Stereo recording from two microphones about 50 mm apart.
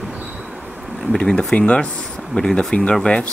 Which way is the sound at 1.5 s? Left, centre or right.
Left.